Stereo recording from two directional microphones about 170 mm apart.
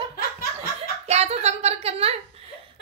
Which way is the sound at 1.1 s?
40° right (ahead or behind).